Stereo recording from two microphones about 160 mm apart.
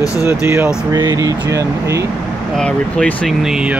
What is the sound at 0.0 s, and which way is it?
Speech, 20° left (ahead or behind).